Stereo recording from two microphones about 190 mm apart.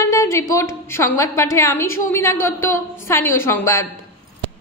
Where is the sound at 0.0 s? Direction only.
15° left (ahead or behind).